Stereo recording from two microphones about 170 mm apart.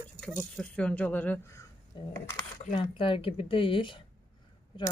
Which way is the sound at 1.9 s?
25° left (ahead or behind).